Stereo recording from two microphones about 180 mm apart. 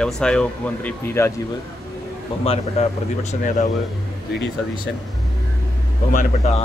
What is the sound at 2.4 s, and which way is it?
Speech, 35° left (ahead or behind).